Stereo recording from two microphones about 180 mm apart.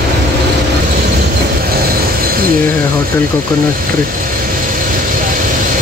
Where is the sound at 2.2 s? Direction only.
55° right (ahead or behind).